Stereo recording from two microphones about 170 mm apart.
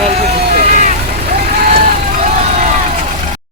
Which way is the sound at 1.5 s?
55° right (ahead or behind).